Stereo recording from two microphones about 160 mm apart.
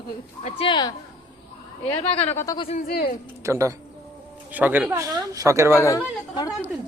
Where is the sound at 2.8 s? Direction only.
70° left (ahead or behind).